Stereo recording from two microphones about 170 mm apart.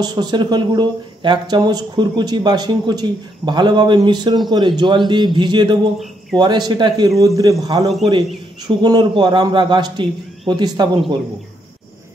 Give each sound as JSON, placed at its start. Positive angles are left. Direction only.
{"t": 0.0, "sound": "speech", "side_deg": -25}